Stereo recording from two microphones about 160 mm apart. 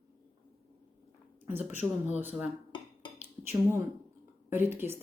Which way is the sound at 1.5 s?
10° right (ahead or behind).